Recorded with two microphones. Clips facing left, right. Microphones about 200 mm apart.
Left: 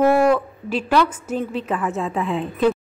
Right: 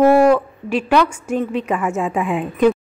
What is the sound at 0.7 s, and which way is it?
A woman's voice, 10° right (ahead or behind).